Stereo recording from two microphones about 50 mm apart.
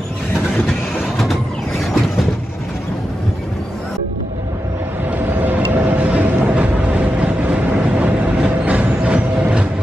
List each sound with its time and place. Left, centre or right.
5.2 s vehicle: right
8.5 s music: right